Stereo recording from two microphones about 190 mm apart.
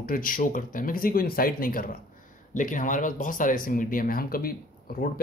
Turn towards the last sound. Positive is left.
turn(degrees=50)  # may be behind; listen again after turning